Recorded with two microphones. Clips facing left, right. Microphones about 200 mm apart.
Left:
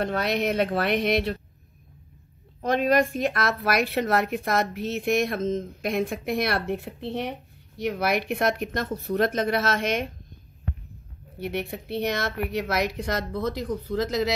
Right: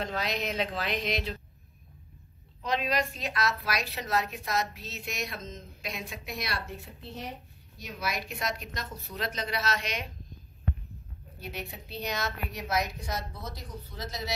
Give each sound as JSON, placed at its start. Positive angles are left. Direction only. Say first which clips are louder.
{"t": 0.0, "sound": "a woman's voice", "louder": "left 7 dB", "side_deg": 60}
{"t": 2.6, "sound": "a woman's voice", "louder": "left 8 dB", "side_deg": 50}
{"t": 11.3, "sound": "a woman's voice", "louder": "left 10 dB", "side_deg": 60}